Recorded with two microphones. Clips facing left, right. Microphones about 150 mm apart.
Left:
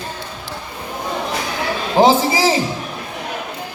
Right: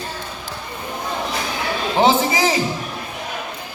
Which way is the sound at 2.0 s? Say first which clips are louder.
Left 3 dB; 35° left (ahead or behind).